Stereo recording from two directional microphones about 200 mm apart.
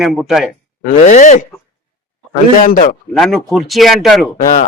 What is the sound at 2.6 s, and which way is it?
Speech, 40° left (ahead or behind).